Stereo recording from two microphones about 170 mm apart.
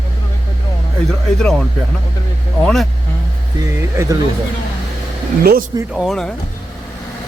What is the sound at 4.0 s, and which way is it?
Speech, 15° right (ahead or behind).